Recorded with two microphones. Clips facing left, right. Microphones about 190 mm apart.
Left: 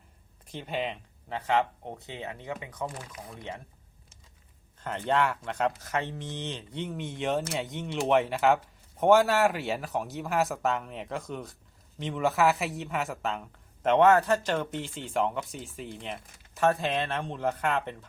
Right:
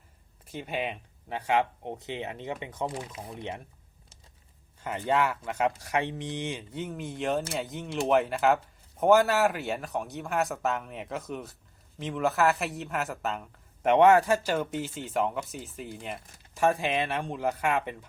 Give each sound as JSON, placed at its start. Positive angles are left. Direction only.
{"t": 0.4, "sound": "speech", "side_deg": -5}
{"t": 4.8, "sound": "speech", "side_deg": -5}
{"t": 13.9, "sound": "speech", "side_deg": -15}